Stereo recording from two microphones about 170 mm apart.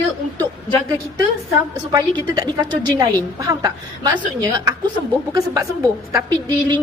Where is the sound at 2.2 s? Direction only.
25° right (ahead or behind).